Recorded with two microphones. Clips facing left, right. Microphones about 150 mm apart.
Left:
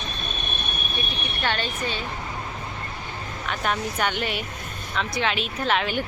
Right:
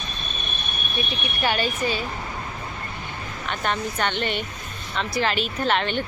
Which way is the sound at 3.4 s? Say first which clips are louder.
Even; centre (ahead or behind).